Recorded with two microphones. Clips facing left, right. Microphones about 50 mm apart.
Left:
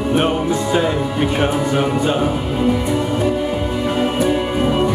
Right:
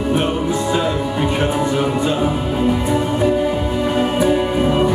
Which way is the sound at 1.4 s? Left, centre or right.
Left.